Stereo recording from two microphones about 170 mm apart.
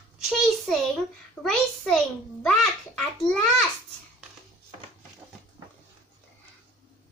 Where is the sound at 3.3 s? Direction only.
5° left (ahead or behind).